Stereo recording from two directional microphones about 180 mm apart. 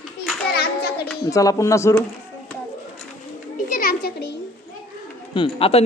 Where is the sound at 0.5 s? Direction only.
60° left (ahead or behind).